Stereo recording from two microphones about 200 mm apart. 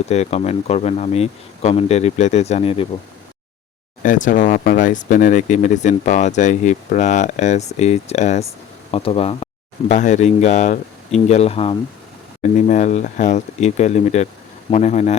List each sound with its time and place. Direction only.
0.1 s speech: 30° left (ahead or behind)
4.0 s speech: 40° left (ahead or behind)